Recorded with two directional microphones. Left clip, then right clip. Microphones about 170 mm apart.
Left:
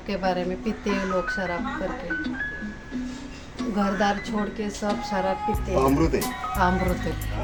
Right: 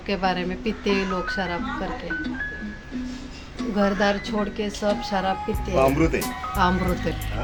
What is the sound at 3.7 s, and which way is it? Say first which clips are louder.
Speech: right 2 dB; 50° right (ahead or behind).